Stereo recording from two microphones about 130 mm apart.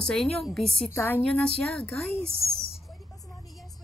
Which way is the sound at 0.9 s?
15° left (ahead or behind).